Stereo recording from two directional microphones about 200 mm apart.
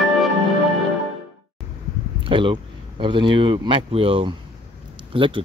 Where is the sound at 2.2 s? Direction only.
25° right (ahead or behind).